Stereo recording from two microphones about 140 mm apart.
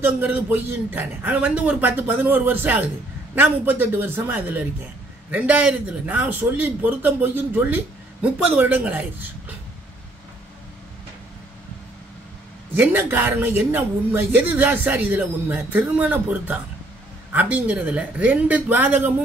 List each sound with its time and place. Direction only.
0.2 s a woman's voice: 15° right (ahead or behind)
12.7 s a woman's voice: 15° right (ahead or behind)